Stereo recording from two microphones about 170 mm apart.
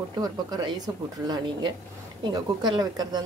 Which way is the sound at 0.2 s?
25° right (ahead or behind).